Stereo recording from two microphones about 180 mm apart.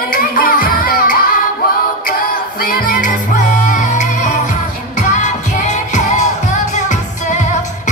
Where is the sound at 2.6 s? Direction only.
55° left (ahead or behind).